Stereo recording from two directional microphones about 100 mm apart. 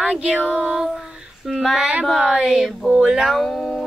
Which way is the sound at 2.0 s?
5° right (ahead or behind).